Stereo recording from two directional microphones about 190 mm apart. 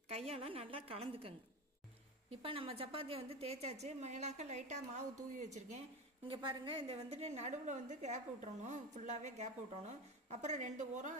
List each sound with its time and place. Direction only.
0.1 s a woman's voice: 30° right (ahead or behind)
2.4 s a woman's voice: 30° right (ahead or behind)
6.2 s a woman's voice: 25° right (ahead or behind)